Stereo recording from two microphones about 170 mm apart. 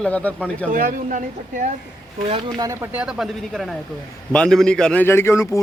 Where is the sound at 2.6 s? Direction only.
20° right (ahead or behind).